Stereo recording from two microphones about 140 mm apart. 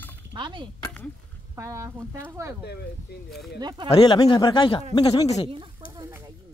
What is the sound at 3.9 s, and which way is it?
Speech, 30° left (ahead or behind).